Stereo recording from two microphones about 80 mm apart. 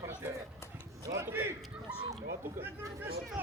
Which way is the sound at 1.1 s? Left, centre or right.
Right.